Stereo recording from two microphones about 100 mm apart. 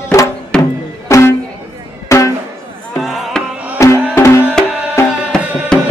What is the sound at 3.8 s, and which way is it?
Music, 30° left (ahead or behind).